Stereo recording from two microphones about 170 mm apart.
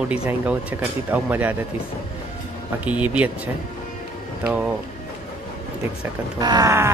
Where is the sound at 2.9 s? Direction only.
10° right (ahead or behind).